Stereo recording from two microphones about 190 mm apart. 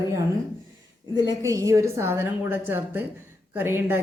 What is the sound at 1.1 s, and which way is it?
A woman's voice, 20° right (ahead or behind).